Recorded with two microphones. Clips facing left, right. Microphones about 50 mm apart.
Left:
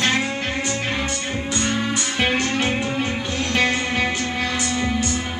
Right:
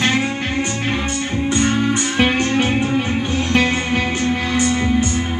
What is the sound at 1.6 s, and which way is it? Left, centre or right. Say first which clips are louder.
Music: right 5 dB; right.